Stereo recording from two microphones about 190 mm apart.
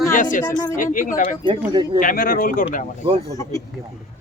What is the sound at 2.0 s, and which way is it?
Speech, 45° left (ahead or behind).